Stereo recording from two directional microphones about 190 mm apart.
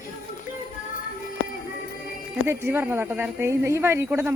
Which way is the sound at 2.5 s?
10° right (ahead or behind).